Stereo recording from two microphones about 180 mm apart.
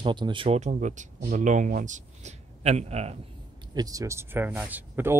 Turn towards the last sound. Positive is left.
turn(degrees=-10)  # may be behind; listen again after turning